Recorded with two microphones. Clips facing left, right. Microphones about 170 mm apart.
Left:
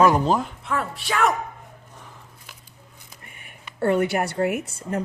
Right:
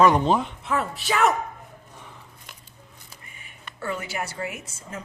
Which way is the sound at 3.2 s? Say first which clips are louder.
Left 2 dB; 55° left (ahead or behind).